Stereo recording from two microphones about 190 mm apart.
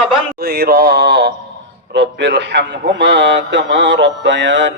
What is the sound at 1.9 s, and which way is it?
Mantra, 65° right (ahead or behind).